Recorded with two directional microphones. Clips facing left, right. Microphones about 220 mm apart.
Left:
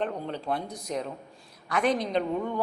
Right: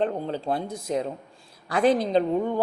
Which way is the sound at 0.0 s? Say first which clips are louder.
Right 5 dB; 30° right (ahead or behind).